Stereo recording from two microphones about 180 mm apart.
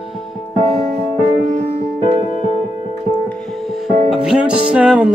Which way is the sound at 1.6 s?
60° right (ahead or behind).